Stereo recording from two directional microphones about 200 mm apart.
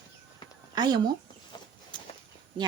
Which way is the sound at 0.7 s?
20° right (ahead or behind).